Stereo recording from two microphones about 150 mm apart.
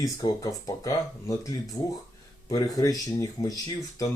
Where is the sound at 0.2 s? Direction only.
25° left (ahead or behind).